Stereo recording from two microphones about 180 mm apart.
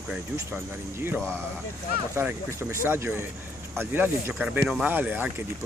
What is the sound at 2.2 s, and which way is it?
Speech, 10° right (ahead or behind).